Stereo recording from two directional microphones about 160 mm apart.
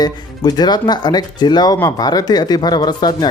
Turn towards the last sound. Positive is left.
turn(degrees=25)  # may be behind; listen again after turning